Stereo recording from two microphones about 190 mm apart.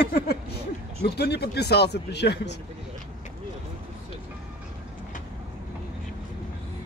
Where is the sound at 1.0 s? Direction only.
60° left (ahead or behind).